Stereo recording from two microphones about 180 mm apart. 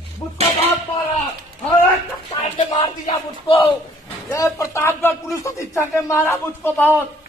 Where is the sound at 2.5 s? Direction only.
25° left (ahead or behind).